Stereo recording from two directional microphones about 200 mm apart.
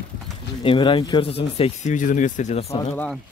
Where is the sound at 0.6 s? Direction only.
25° left (ahead or behind).